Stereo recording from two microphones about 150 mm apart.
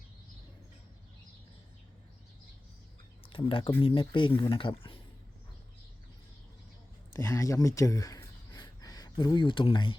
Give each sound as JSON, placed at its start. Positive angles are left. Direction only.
{"t": 3.2, "sound": "speech", "side_deg": 35}
{"t": 7.2, "sound": "speech", "side_deg": 20}